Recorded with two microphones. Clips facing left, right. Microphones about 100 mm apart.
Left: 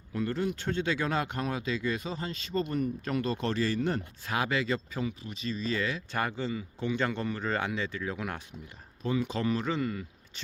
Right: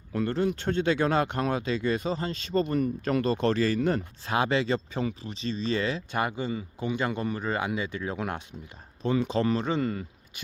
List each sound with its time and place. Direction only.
0.1 s speech: 60° right (ahead or behind)
3.4 s speech: 85° right
4.3 s speech: 25° right (ahead or behind)
6.1 s speech: 15° right (ahead or behind)